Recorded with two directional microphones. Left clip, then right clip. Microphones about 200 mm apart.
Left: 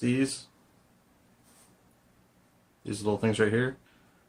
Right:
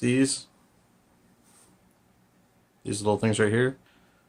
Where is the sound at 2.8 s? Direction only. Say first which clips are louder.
Right 3 dB; 35° right (ahead or behind).